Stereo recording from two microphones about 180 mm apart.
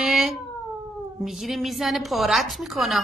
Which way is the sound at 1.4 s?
Centre (ahead or behind).